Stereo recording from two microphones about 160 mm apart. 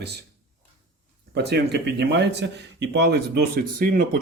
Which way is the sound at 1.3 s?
90° right.